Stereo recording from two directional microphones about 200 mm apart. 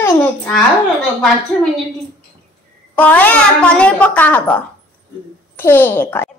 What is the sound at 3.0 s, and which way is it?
A woman's voice, 10° left (ahead or behind).